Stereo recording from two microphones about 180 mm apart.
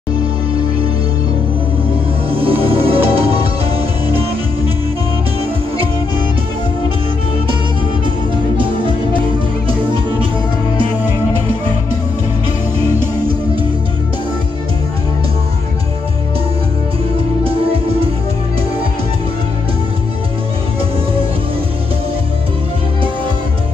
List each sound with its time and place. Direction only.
2.3 s music: 30° right (ahead or behind)